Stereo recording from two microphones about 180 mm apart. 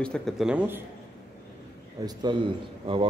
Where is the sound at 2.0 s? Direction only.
25° right (ahead or behind).